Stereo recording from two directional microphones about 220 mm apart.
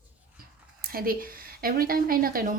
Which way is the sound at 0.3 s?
40° right (ahead or behind).